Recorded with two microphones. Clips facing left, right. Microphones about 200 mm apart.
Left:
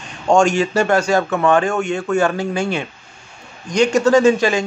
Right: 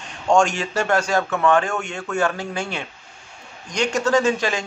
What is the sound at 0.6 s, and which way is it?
A man's voice, 5° left (ahead or behind).